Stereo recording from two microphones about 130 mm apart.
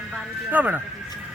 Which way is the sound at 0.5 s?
10° right (ahead or behind).